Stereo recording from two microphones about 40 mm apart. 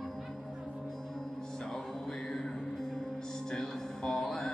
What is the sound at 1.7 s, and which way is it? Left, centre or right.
Music, centre.